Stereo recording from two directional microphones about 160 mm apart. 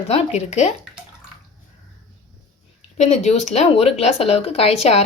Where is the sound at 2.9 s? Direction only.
45° left (ahead or behind).